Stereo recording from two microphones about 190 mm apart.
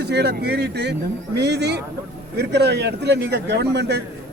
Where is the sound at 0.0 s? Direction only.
60° right (ahead or behind).